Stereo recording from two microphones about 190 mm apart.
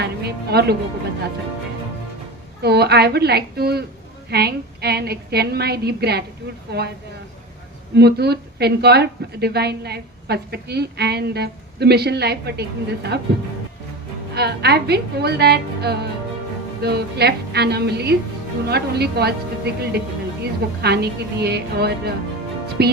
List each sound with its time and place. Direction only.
0.0 s speech: 60° right (ahead or behind)
2.6 s a woman's voice: 60° right (ahead or behind)
7.9 s a woman's voice: 60° right (ahead or behind)
14.3 s a woman's voice: 60° right (ahead or behind)